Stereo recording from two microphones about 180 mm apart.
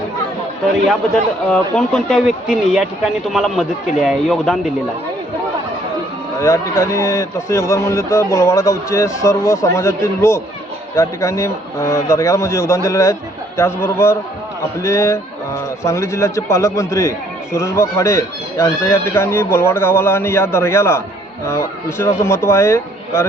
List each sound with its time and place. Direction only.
1.5 s speech: 5° left (ahead or behind)
6.4 s a man's voice: 15° left (ahead or behind)